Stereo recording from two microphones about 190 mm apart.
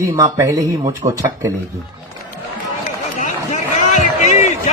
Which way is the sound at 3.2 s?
40° left (ahead or behind).